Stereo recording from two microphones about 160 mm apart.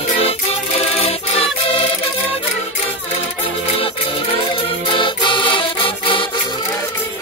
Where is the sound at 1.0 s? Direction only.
35° left (ahead or behind).